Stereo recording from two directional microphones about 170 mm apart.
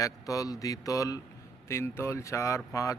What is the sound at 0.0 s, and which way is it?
Speech, 20° left (ahead or behind).